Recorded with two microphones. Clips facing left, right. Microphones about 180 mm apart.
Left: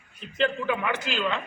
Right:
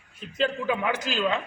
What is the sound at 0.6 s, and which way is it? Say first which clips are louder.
Speech: right 1 dB; 10° right (ahead or behind).